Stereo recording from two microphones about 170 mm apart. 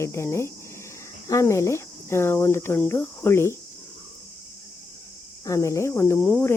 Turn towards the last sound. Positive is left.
turn(degrees=5)  # may be behind; listen again after turning